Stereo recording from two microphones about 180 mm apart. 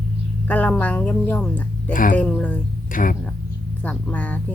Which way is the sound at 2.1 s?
5° left (ahead or behind).